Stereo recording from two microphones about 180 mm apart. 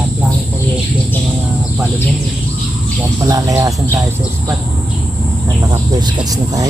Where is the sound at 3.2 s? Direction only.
20° right (ahead or behind).